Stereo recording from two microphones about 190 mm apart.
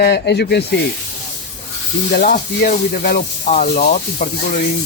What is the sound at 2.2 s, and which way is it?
Speech, 45° left (ahead or behind).